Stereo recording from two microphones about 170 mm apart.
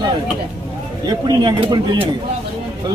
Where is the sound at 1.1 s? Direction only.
25° right (ahead or behind).